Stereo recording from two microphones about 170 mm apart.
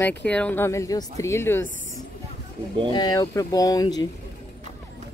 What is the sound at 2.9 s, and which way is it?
Speech, 25° left (ahead or behind).